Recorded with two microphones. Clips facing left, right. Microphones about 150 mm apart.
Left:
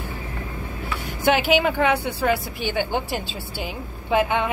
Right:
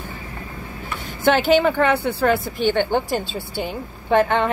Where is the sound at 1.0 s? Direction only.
10° left (ahead or behind).